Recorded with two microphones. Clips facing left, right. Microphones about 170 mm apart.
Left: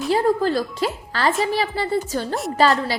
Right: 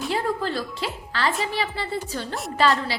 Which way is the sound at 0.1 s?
40° left (ahead or behind).